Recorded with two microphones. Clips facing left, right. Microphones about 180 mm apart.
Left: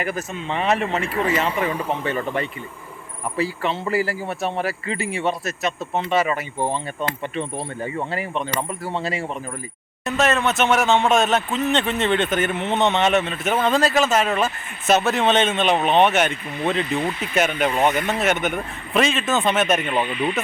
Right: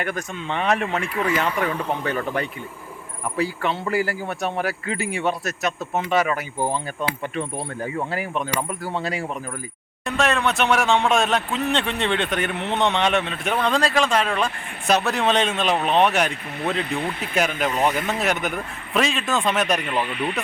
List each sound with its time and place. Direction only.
0.0 s speech: 5° left (ahead or behind)
1.0 s speech: 30° left (ahead or behind)
1.5 s speech: 5° left (ahead or behind)